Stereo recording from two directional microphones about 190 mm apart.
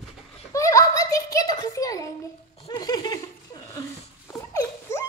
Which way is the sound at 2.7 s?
20° left (ahead or behind).